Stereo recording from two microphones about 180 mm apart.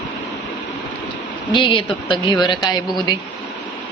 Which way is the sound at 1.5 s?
25° left (ahead or behind).